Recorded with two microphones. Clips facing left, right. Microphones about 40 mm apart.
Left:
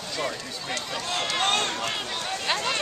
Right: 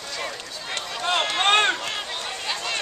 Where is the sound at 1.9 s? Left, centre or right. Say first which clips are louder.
Even; centre.